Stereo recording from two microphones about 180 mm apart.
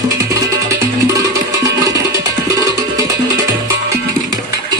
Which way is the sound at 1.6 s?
20° right (ahead or behind).